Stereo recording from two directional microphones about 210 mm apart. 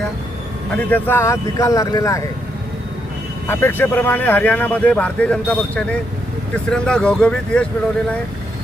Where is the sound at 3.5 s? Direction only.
10° left (ahead or behind).